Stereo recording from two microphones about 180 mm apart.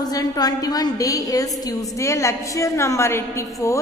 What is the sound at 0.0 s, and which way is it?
A woman's voice, 20° left (ahead or behind).